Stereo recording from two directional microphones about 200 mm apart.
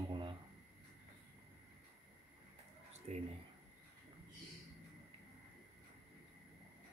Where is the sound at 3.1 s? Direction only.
35° right (ahead or behind).